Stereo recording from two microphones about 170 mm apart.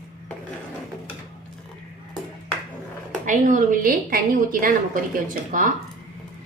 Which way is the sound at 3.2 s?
50° right (ahead or behind).